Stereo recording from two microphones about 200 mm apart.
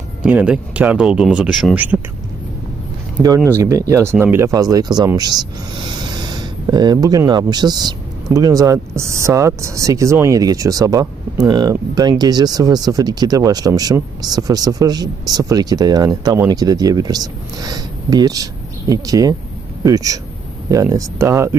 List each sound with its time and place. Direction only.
0.2 s speech: 5° right (ahead or behind)
3.3 s speech: 10° right (ahead or behind)